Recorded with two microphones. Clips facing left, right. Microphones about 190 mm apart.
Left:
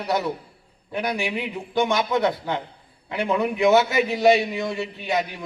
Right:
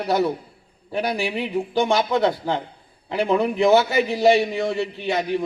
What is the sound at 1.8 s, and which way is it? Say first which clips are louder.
A man's voice: right 1 dB; 30° right (ahead or behind).